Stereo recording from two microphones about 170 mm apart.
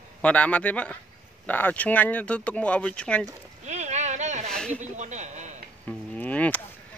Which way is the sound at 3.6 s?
40° right (ahead or behind).